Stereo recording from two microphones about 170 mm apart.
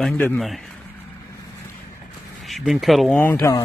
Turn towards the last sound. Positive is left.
turn(degrees=15)  # may be behind; listen again after turning